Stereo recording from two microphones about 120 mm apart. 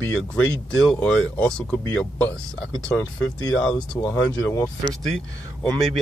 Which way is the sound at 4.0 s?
30° left (ahead or behind).